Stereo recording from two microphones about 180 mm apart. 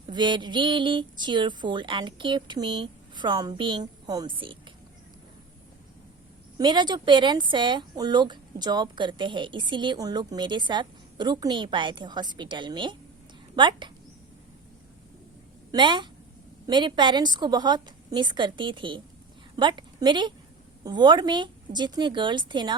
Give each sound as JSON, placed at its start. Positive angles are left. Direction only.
{"t": 0.1, "sound": "speech", "side_deg": -25}
{"t": 6.6, "sound": "speech", "side_deg": -25}
{"t": 15.7, "sound": "a woman's voice", "side_deg": -25}